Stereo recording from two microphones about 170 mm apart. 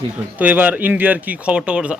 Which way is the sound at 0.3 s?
10° right (ahead or behind).